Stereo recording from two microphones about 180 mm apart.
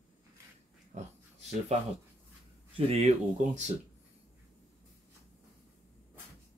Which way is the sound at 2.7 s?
35° right (ahead or behind).